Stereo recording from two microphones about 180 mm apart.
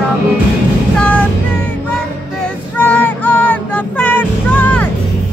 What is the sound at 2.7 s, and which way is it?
Vehicle, 10° left (ahead or behind).